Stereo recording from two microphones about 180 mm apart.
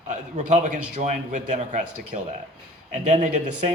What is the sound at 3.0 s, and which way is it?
Speech, 45° right (ahead or behind).